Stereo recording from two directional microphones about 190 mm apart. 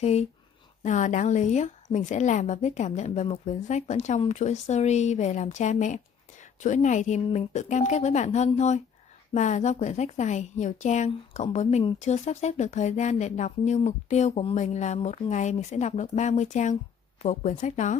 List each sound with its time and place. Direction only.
0.0 s a woman's voice: 35° left (ahead or behind)